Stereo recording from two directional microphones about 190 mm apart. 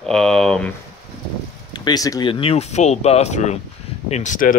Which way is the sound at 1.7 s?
20° left (ahead or behind).